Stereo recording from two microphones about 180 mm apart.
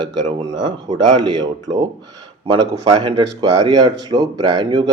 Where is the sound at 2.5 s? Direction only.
35° right (ahead or behind).